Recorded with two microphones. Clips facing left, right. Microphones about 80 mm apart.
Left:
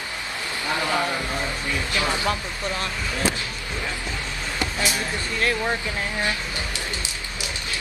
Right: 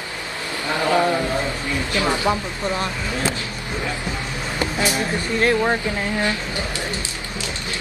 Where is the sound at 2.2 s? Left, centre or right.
Right.